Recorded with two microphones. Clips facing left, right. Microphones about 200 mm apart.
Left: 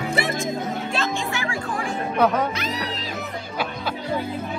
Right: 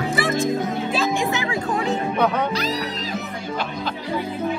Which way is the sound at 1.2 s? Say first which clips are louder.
Right 4 dB; 20° right (ahead or behind).